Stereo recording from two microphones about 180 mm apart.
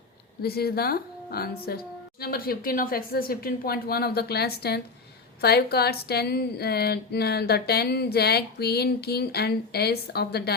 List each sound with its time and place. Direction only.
0.4 s a woman's voice: 60° left (ahead or behind)